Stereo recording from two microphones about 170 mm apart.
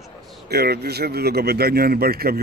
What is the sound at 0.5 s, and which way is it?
Speech, 70° right (ahead or behind).